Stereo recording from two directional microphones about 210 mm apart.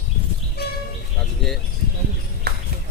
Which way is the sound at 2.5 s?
50° right (ahead or behind).